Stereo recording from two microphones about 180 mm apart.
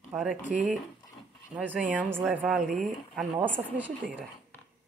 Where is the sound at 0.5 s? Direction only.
5° right (ahead or behind).